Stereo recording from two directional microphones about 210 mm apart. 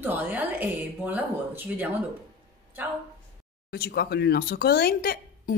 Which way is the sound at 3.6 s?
50° left (ahead or behind).